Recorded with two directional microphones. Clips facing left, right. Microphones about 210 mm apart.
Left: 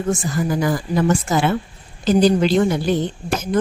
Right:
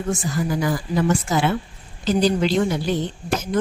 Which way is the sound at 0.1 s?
45° left (ahead or behind).